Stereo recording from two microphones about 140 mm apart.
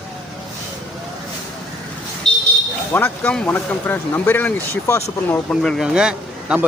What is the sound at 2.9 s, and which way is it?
Speech, 10° left (ahead or behind).